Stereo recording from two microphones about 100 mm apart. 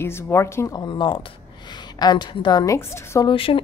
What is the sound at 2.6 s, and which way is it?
Speech, 30° left (ahead or behind).